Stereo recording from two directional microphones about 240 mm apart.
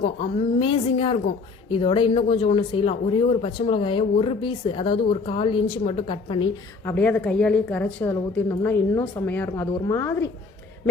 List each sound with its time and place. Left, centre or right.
0.0 s speech: left
6.8 s a woman's voice: centre